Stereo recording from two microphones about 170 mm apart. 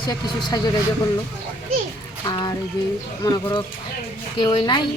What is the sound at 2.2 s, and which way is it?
Speech, 25° left (ahead or behind).